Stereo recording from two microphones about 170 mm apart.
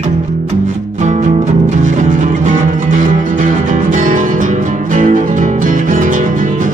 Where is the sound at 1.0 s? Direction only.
45° right (ahead or behind).